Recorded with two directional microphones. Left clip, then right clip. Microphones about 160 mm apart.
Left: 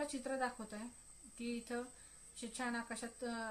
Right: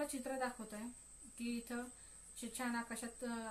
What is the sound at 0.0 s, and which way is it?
A woman's voice, 30° left (ahead or behind).